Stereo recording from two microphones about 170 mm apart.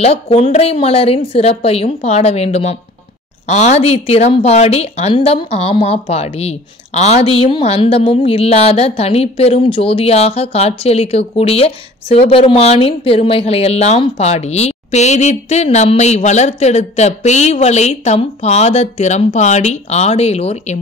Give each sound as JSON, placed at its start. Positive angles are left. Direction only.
{"t": 0.0, "sound": "a woman's voice", "side_deg": 35}